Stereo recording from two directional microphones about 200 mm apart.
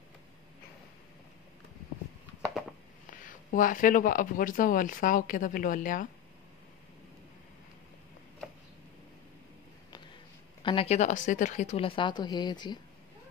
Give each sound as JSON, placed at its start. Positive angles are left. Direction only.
{"t": 3.1, "sound": "speech", "side_deg": 40}
{"t": 10.6, "sound": "speech", "side_deg": 25}